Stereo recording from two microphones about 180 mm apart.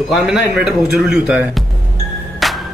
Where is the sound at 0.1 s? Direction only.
Centre (ahead or behind).